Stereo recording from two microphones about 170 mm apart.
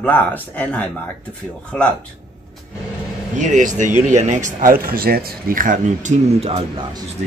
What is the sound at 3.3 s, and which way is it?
Speech, 45° right (ahead or behind).